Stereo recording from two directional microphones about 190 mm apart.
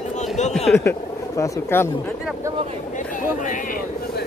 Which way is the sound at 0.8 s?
15° left (ahead or behind).